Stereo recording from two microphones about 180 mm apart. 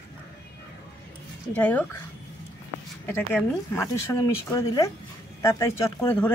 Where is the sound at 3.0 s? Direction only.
10° left (ahead or behind).